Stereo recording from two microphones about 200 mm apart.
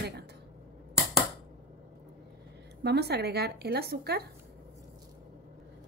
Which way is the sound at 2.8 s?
55° right (ahead or behind).